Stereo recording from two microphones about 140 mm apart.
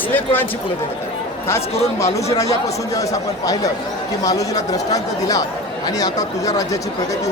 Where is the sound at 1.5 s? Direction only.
20° left (ahead or behind).